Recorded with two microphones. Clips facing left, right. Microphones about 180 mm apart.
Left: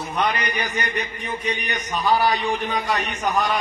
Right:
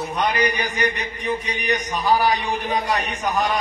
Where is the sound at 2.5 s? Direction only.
40° right (ahead or behind).